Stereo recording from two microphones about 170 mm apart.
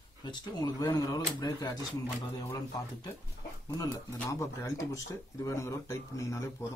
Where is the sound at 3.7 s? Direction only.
20° left (ahead or behind).